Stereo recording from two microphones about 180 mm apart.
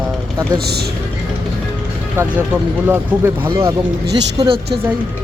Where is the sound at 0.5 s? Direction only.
60° right (ahead or behind).